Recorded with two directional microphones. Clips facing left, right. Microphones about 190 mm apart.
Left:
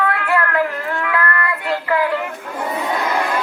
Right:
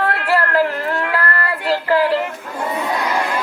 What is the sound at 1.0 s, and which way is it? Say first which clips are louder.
Music: even; 35° right (ahead or behind).